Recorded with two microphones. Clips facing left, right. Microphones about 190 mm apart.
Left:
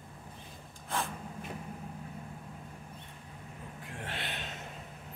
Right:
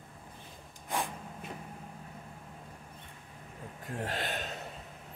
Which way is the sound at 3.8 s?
40° right (ahead or behind).